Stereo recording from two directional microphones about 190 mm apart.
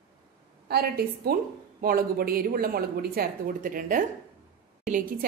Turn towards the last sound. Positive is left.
turn(degrees=-40)  # may be behind; listen again after turning